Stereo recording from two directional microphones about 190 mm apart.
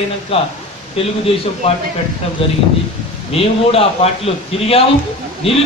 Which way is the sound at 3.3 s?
30° left (ahead or behind).